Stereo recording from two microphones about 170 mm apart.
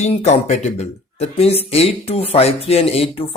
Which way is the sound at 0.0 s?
40° left (ahead or behind).